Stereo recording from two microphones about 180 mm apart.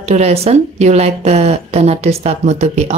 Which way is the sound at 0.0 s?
35° right (ahead or behind).